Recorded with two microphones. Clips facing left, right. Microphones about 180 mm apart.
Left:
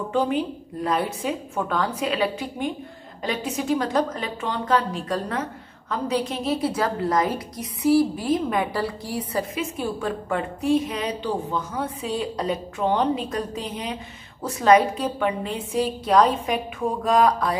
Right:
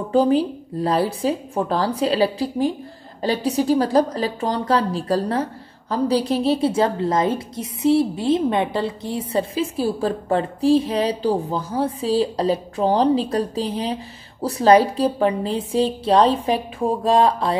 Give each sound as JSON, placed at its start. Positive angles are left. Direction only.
{"t": 0.1, "sound": "a woman's voice", "side_deg": -35}